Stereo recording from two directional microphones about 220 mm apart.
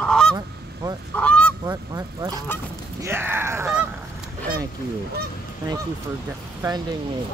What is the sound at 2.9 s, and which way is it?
Honk, 10° right (ahead or behind).